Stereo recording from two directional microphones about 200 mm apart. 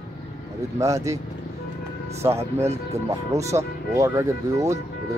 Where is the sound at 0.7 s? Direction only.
15° right (ahead or behind).